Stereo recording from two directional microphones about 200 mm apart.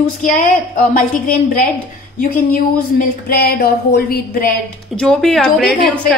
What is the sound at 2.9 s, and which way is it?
A woman's voice, 50° left (ahead or behind).